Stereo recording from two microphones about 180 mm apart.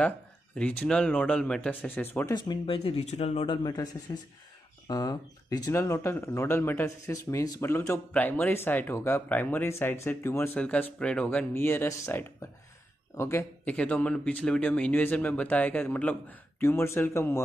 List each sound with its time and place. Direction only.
0.6 s speech: 5° left (ahead or behind)
2.3 s speech: 25° left (ahead or behind)
3.6 s speech: 20° left (ahead or behind)